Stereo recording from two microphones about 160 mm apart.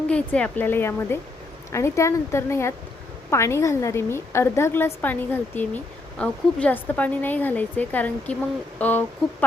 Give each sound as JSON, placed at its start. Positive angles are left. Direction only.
{"t": 0.1, "sound": "a woman's voice", "side_deg": 10}